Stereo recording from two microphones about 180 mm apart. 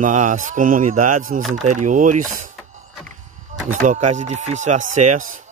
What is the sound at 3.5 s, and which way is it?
Speech, 45° right (ahead or behind).